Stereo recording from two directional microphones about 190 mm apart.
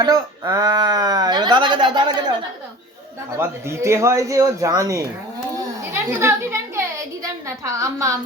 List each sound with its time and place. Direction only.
0.0 s speech: 20° right (ahead or behind)
3.3 s speech: 15° right (ahead or behind)
5.5 s a sound: 15° right (ahead or behind)